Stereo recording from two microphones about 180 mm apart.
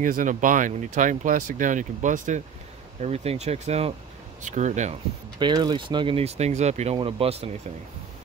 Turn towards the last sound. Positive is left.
turn(degrees=-35)  # may be behind; listen again after turning